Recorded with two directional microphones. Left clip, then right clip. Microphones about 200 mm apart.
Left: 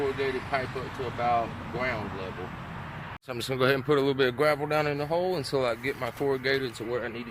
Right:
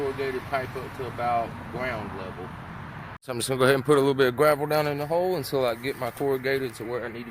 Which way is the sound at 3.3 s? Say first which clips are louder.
Right 4 dB; 55° right (ahead or behind).